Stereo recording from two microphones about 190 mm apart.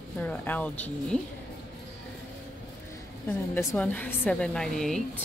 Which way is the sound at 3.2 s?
10° left (ahead or behind).